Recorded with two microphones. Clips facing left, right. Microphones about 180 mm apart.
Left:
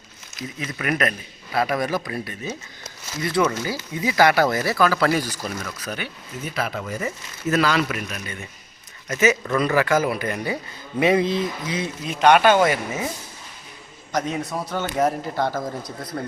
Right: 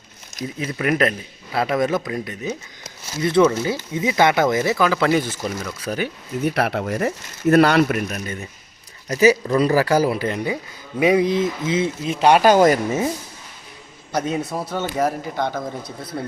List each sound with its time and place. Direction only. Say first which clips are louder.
0.6 s speech: right 4 dB; 25° right (ahead or behind)
6.4 s speech: right 7 dB; 65° right (ahead or behind); by 11.9 s 20° right (ahead or behind)
12.2 s speech: right 2 dB; 35° right (ahead or behind)
14.1 s a man's voice: right 2 dB; 10° right (ahead or behind)
16.1 s a man's voice: right 1 dB; 15° right (ahead or behind)